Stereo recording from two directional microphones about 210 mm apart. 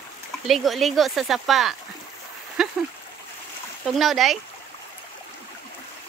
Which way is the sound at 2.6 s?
Centre (ahead or behind).